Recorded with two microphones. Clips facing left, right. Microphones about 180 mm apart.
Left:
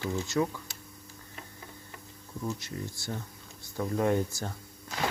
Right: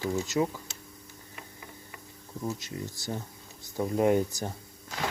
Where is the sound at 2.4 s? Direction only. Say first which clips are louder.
Right 1 dB; 20° right (ahead or behind).